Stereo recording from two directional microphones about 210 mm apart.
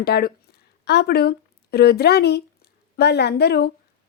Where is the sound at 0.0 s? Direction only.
50° left (ahead or behind).